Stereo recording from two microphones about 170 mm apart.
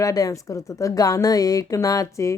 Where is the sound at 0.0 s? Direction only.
20° left (ahead or behind).